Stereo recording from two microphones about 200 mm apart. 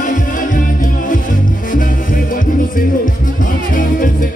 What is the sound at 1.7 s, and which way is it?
Music, 45° left (ahead or behind).